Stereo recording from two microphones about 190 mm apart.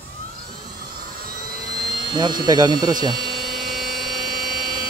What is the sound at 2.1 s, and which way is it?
Speech, 20° right (ahead or behind).